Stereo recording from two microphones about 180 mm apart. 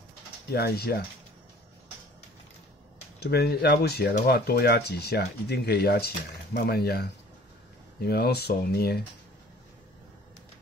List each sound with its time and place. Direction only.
0.5 s speech: 60° left (ahead or behind)
3.2 s speech: 65° left (ahead or behind)